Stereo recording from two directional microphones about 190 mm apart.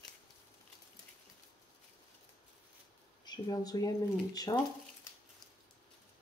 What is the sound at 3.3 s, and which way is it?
Speech, 20° left (ahead or behind).